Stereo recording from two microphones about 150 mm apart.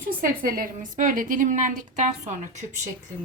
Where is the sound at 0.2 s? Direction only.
75° right (ahead or behind); by 2.6 s 55° right (ahead or behind).